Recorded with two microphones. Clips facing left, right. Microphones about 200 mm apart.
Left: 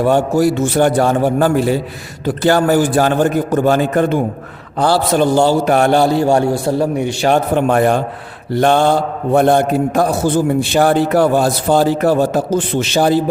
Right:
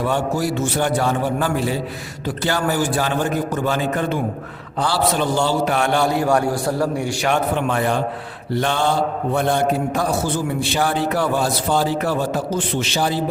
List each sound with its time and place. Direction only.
0.0 s a man's voice: 50° left (ahead or behind); by 7.3 s 20° left (ahead or behind)
7.3 s a man's voice: 40° left (ahead or behind)